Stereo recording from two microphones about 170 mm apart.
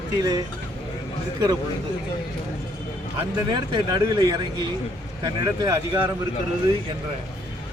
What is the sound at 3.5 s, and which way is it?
Speech, 25° right (ahead or behind).